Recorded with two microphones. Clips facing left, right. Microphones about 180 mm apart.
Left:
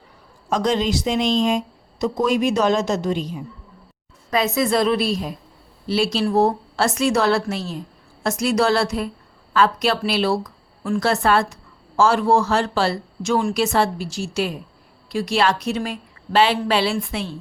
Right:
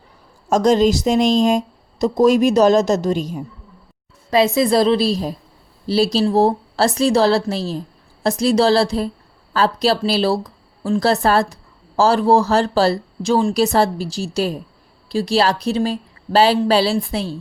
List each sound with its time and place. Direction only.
0.5 s a woman's voice: 40° right (ahead or behind)
4.3 s a woman's voice: 30° right (ahead or behind)